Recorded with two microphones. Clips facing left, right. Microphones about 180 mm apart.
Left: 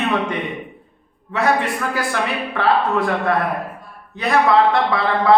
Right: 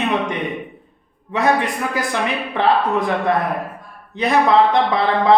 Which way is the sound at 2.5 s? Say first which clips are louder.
Right 1 dB; 20° right (ahead or behind).